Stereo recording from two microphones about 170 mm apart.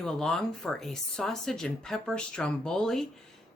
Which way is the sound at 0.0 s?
Centre (ahead or behind).